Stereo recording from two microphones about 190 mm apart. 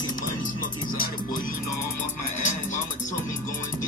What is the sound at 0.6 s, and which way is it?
Music, 45° left (ahead or behind).